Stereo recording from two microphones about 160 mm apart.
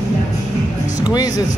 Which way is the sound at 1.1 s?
20° left (ahead or behind).